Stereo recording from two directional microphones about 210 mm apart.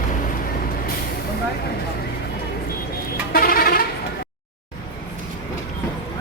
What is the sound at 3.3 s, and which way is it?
Music, 45° left (ahead or behind).